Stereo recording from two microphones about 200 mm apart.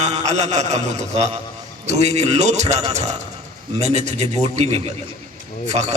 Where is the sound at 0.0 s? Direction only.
35° right (ahead or behind).